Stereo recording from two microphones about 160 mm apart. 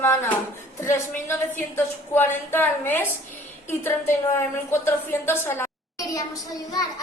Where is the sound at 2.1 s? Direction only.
15° left (ahead or behind).